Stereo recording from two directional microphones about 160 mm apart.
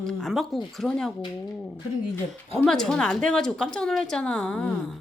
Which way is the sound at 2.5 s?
5° left (ahead or behind).